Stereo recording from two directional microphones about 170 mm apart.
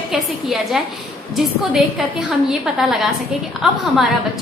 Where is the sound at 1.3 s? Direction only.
Centre (ahead or behind).